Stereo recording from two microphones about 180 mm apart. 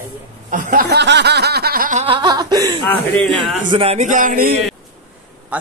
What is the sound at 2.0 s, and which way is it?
Speech, 25° right (ahead or behind).